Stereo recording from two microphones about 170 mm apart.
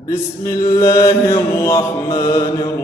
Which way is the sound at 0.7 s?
20° left (ahead or behind).